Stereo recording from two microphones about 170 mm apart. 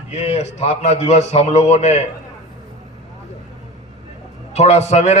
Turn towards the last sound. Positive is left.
turn(degrees=40)  # may be behind; listen again after turning